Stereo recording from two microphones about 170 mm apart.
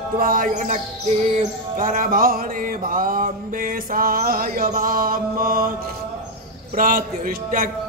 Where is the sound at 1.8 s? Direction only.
55° right (ahead or behind).